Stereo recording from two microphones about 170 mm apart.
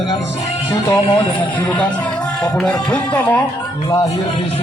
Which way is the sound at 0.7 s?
25° left (ahead or behind).